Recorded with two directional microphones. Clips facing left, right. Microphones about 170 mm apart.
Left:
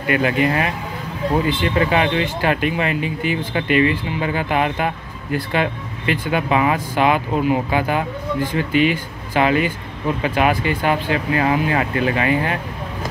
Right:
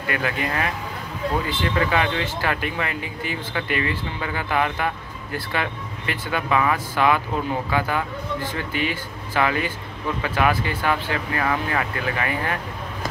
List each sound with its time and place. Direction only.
0.0 s speech: 20° left (ahead or behind)